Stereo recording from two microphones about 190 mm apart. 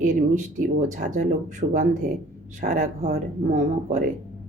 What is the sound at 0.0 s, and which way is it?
Speech, 40° right (ahead or behind).